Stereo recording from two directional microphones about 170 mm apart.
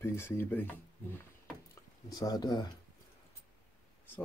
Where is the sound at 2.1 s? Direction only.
20° left (ahead or behind).